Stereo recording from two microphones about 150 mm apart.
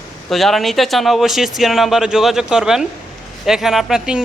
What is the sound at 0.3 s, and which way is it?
Speech, centre (ahead or behind).